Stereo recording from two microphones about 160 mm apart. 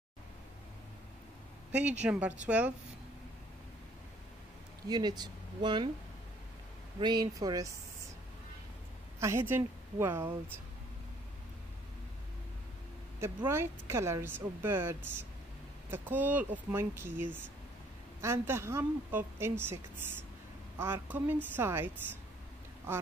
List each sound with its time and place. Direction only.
1.8 s a woman's voice: 10° right (ahead or behind)
4.8 s speech: 25° right (ahead or behind)
7.0 s speech: 25° right (ahead or behind)
9.2 s a woman's voice: 15° right (ahead or behind)
13.5 s a woman's voice: 15° right (ahead or behind)